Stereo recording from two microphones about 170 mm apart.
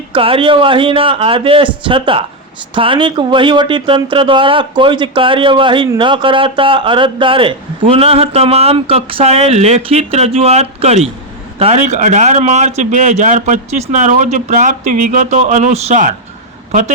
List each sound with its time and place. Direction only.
0.1 s a man's voice: 30° right (ahead or behind)